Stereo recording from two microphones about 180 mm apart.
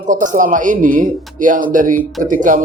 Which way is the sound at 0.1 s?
45° right (ahead or behind).